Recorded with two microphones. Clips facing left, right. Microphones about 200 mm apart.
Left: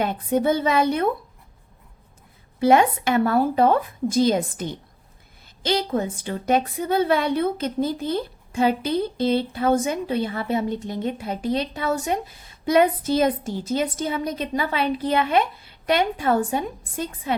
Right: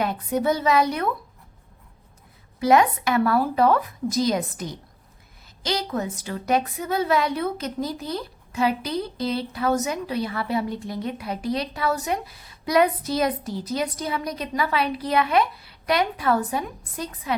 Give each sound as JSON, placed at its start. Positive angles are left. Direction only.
{"t": 0.0, "sound": "a woman's voice", "side_deg": 25}
{"t": 2.6, "sound": "a woman's voice", "side_deg": 30}